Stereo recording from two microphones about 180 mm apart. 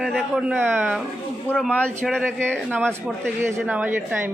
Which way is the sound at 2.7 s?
10° right (ahead or behind).